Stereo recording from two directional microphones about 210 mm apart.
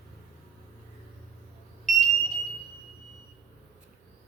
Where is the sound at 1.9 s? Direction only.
Centre (ahead or behind).